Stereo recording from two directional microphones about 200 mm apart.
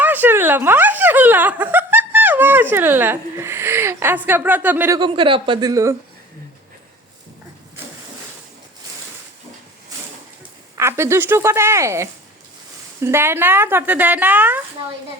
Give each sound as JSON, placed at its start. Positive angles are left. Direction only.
{"t": 0.0, "sound": "speech", "side_deg": -10}
{"t": 4.9, "sound": "speech", "side_deg": -25}
{"t": 10.8, "sound": "speech", "side_deg": -15}